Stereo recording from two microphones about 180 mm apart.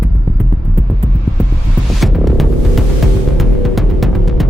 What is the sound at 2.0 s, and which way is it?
Music, centre (ahead or behind).